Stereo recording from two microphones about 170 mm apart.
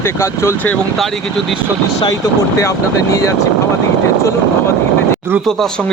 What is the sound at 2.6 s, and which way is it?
Speech, 20° left (ahead or behind).